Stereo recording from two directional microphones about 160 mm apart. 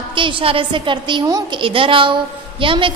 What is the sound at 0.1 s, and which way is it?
A woman's voice, 30° right (ahead or behind).